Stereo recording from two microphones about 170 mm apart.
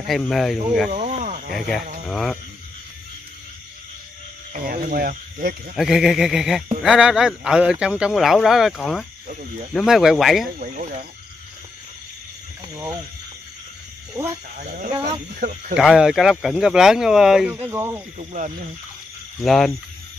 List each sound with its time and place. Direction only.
0.0 s speech: centre (ahead or behind)
0.9 s snake: 45° right (ahead or behind)
2.0 s speech: centre (ahead or behind)
4.6 s speech: 60° right (ahead or behind)
5.8 s speech: centre (ahead or behind)
10.6 s speech: 50° right (ahead or behind)
14.6 s speech: 50° right (ahead or behind)
14.9 s speech: 25° right (ahead or behind)
15.7 s speech: 5° right (ahead or behind)
17.6 s speech: 15° right (ahead or behind)
18.1 s speech: 45° right (ahead or behind)
19.4 s speech: centre (ahead or behind)